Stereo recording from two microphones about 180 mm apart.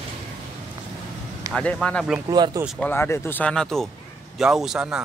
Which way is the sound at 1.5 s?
5° left (ahead or behind).